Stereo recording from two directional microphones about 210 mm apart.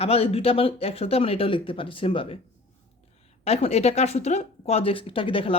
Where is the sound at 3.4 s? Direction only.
30° left (ahead or behind).